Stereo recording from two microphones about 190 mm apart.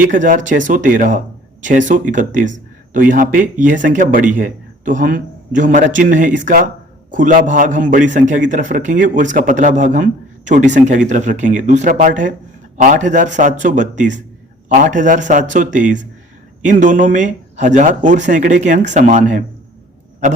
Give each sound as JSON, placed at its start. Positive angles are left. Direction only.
{"t": 0.0, "sound": "speech", "side_deg": -45}